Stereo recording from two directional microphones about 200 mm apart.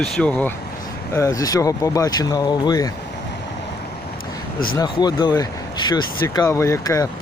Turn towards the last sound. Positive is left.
turn(degrees=15)  # may be behind; listen again after turning